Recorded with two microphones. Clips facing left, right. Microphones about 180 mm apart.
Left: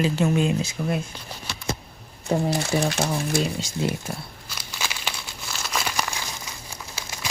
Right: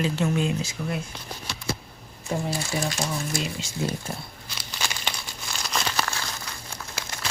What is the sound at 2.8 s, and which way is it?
Speech, 65° left (ahead or behind).